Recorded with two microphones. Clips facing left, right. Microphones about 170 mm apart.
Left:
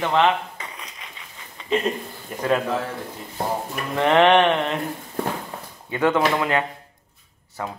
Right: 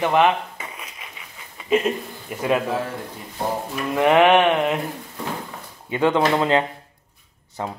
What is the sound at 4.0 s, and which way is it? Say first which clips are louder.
Speech: right 1 dB; 10° right (ahead or behind).